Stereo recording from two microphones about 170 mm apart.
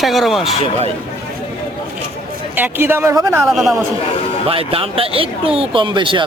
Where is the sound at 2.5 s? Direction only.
10° right (ahead or behind).